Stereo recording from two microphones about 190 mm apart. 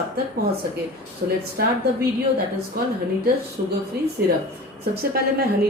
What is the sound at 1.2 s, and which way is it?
Speech, 50° right (ahead or behind).